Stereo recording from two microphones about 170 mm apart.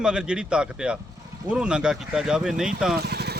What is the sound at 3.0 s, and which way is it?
Vehicle, 70° right (ahead or behind).